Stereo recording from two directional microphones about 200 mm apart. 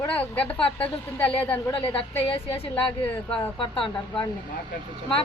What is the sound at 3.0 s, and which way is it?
Speech, 10° left (ahead or behind).